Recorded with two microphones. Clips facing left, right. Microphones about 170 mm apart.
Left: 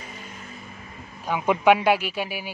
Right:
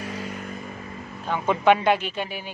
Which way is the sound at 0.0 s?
75° right (ahead or behind).